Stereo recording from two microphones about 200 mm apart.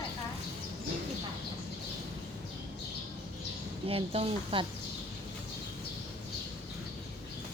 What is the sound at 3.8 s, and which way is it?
Speech, 30° right (ahead or behind).